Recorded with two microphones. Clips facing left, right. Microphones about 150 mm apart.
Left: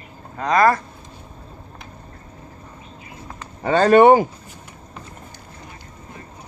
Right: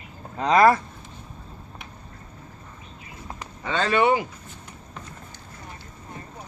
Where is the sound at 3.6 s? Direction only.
45° left (ahead or behind).